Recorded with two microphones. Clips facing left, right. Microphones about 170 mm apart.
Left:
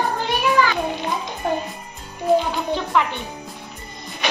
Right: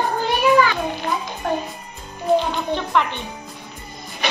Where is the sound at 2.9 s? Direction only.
5° left (ahead or behind).